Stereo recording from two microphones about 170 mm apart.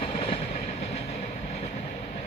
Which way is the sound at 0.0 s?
35° left (ahead or behind).